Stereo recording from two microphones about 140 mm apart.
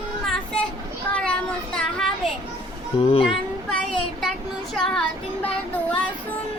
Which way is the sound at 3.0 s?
45° left (ahead or behind).